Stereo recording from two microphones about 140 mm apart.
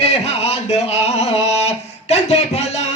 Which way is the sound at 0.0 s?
50° left (ahead or behind).